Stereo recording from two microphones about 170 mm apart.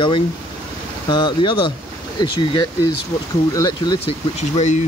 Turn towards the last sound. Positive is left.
turn(degrees=45)  # may be behind; listen again after turning